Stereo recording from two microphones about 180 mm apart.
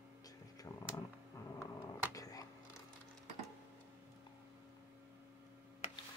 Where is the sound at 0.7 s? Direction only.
15° left (ahead or behind).